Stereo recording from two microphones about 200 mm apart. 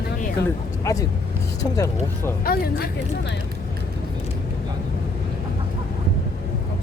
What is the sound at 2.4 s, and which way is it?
Speech, 50° left (ahead or behind).